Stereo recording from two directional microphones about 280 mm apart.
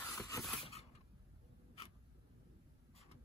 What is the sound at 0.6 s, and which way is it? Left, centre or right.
Mechanisms, left.